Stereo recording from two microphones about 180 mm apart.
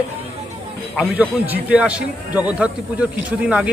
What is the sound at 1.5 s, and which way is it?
A man's voice, 5° right (ahead or behind).